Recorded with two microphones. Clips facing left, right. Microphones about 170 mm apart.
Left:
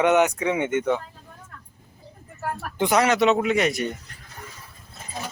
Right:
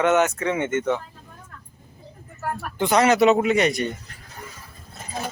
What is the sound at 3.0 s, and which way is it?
Speech, 5° right (ahead or behind).